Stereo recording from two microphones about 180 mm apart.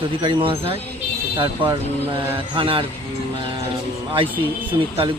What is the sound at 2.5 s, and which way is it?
Speech, 30° right (ahead or behind).